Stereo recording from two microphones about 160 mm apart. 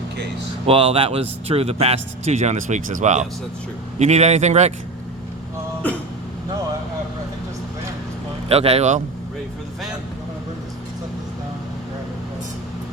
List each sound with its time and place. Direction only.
0.7 s a man's voice: 35° right (ahead or behind)
8.4 s a man's voice: 40° right (ahead or behind)